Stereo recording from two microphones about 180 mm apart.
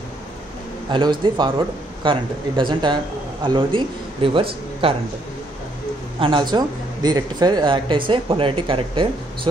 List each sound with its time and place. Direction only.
0.9 s speech: 25° right (ahead or behind)
6.1 s speech: 30° right (ahead or behind)